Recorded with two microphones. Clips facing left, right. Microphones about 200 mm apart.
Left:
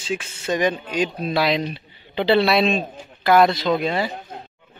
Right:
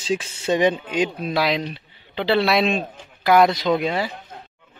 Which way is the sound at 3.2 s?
15° right (ahead or behind).